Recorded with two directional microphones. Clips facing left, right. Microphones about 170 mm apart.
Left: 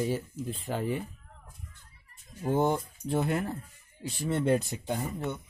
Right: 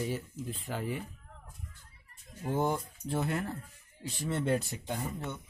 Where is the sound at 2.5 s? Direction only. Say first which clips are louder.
Left 4 dB; 25° left (ahead or behind).